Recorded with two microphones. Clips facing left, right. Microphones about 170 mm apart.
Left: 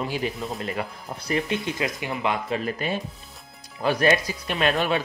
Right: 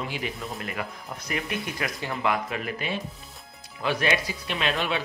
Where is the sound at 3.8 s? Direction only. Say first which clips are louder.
Left 5 dB; 40° left (ahead or behind).